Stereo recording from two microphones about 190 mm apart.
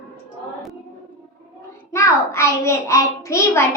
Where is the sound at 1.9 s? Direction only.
15° left (ahead or behind).